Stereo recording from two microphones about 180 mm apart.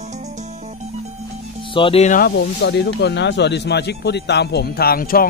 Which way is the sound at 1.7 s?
30° left (ahead or behind).